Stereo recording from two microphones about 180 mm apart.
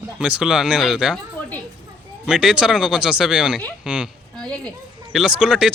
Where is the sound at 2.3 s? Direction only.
5° right (ahead or behind).